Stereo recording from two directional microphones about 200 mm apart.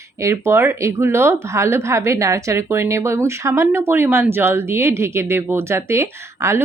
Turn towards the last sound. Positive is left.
turn(degrees=-15)  # may be behind; listen again after turning